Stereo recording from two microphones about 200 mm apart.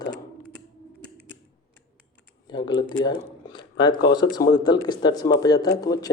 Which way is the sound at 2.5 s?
20° left (ahead or behind).